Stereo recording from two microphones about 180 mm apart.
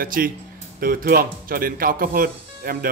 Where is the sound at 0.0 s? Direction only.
55° right (ahead or behind).